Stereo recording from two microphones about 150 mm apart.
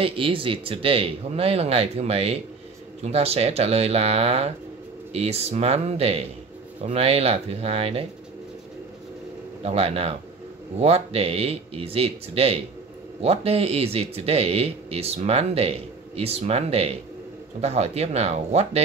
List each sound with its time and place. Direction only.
0.0 s speech: 35° right (ahead or behind)
9.6 s speech: 40° right (ahead or behind)